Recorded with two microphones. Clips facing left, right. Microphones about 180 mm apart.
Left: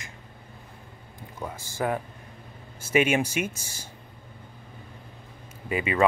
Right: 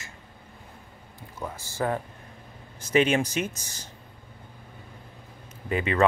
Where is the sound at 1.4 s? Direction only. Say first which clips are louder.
Even; 10° left (ahead or behind).